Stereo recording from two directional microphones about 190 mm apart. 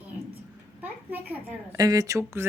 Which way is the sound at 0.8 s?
10° right (ahead or behind).